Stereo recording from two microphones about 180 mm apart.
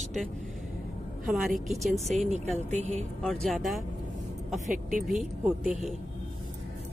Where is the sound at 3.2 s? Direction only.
Centre (ahead or behind).